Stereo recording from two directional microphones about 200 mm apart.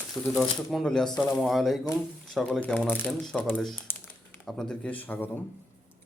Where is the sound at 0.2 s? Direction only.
Centre (ahead or behind).